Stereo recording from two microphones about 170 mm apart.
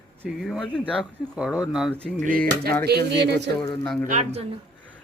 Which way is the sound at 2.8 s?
75° right (ahead or behind).